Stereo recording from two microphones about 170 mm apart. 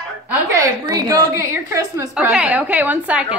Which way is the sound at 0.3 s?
20° right (ahead or behind).